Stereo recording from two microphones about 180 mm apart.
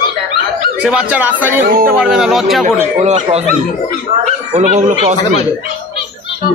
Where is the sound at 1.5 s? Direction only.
55° right (ahead or behind).